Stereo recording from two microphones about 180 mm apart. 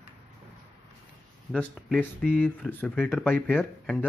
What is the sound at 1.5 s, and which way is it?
Speech, 5° left (ahead or behind).